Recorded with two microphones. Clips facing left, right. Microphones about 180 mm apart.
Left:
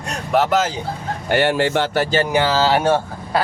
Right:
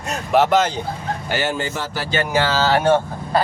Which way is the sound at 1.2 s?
60° left (ahead or behind).